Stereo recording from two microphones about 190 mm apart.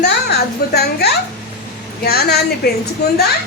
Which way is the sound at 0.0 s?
60° left (ahead or behind).